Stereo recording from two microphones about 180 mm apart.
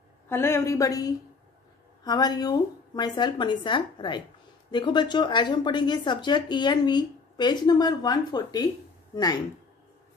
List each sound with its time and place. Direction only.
0.3 s speech: 15° left (ahead or behind)